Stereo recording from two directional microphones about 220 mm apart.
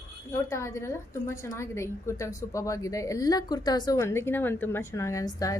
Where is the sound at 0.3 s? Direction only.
15° left (ahead or behind).